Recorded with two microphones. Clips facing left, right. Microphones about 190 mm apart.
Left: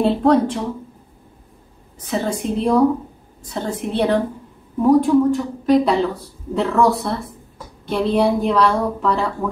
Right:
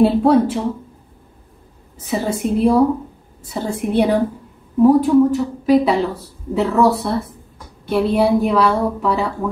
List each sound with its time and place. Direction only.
0.0 s a woman's voice: 5° right (ahead or behind)
2.0 s a woman's voice: 10° right (ahead or behind)